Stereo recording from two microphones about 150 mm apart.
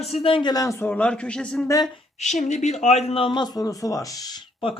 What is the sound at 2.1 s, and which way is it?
Speech, 50° left (ahead or behind).